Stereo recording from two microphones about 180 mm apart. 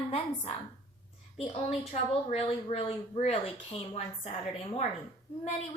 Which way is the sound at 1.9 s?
35° left (ahead or behind).